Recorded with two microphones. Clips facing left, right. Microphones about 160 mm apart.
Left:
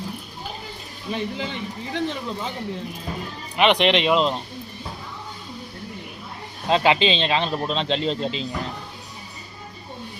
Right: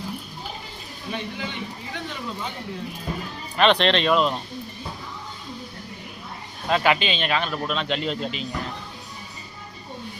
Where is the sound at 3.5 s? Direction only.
15° left (ahead or behind).